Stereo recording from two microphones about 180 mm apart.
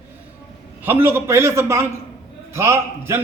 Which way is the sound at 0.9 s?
10° right (ahead or behind).